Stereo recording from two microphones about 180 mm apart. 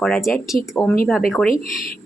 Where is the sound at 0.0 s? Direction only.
Centre (ahead or behind).